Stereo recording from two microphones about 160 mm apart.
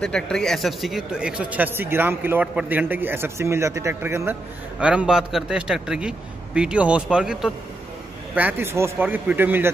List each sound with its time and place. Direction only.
0.0 s speech: 5° left (ahead or behind); by 9.7 s 15° right (ahead or behind)